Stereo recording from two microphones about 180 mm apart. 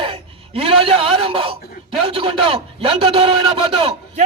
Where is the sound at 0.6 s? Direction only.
30° right (ahead or behind).